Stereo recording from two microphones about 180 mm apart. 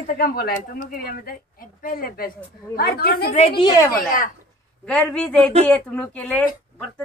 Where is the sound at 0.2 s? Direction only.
55° left (ahead or behind).